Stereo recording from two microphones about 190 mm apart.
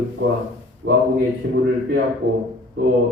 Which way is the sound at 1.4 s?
65° right (ahead or behind).